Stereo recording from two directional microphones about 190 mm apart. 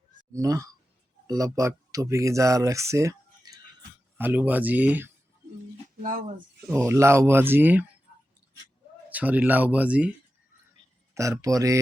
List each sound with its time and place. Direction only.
0.3 s speech: 15° right (ahead or behind)
6.0 s speech: 45° right (ahead or behind)
6.8 s speech: 15° right (ahead or behind)
9.0 s speech: 10° right (ahead or behind)
11.1 s speech: 15° right (ahead or behind)